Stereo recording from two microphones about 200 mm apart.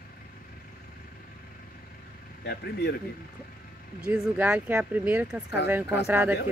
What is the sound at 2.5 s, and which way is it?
Speech, 55° left (ahead or behind).